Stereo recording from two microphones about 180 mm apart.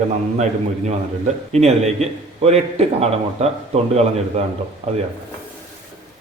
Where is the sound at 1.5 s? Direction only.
35° right (ahead or behind).